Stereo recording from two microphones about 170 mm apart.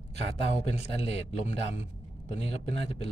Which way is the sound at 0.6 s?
40° left (ahead or behind).